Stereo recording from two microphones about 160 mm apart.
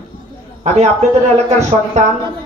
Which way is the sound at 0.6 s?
45° right (ahead or behind).